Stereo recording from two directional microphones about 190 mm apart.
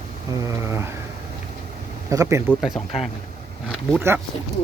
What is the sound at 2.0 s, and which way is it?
Speech, 15° right (ahead or behind).